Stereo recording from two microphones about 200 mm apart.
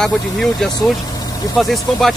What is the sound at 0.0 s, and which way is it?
Speech, centre (ahead or behind).